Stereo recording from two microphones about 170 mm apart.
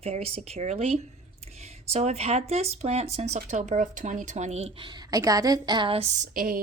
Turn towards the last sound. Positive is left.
turn(degrees=-55)  # may be behind; listen again after turning